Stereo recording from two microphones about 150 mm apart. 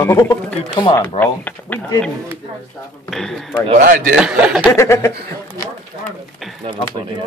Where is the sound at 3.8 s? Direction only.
80° right.